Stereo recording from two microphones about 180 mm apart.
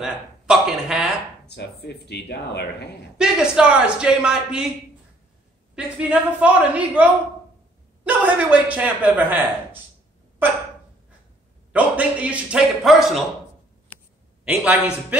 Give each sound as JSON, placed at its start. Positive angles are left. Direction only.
{"t": 0.0, "sound": "speech", "side_deg": -5}
{"t": 1.4, "sound": "speech", "side_deg": 70}
{"t": 3.2, "sound": "speech", "side_deg": -5}
{"t": 5.9, "sound": "a man's voice", "side_deg": -5}
{"t": 11.7, "sound": "a man's voice", "side_deg": -10}
{"t": 14.4, "sound": "a man's voice", "side_deg": -5}